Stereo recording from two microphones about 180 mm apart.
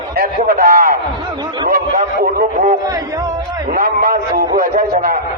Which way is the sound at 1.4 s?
25° right (ahead or behind).